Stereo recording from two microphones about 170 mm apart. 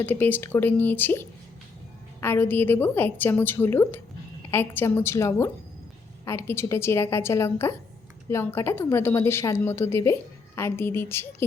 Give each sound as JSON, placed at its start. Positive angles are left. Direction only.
{"t": 0.0, "sound": "a woman's voice", "side_deg": 10}